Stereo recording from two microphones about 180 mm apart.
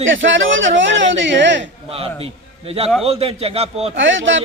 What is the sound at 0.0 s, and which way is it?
A man's voice, 90° right.